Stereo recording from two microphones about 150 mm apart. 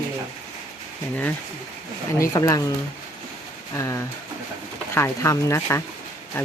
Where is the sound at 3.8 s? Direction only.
20° left (ahead or behind).